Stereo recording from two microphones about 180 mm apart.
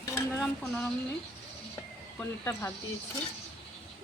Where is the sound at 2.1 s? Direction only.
10° left (ahead or behind).